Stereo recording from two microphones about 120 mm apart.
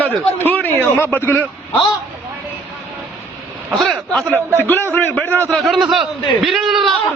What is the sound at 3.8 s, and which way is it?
Speech, centre (ahead or behind).